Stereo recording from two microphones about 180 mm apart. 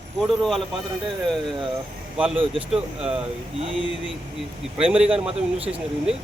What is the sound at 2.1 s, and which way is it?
Speech, 5° right (ahead or behind).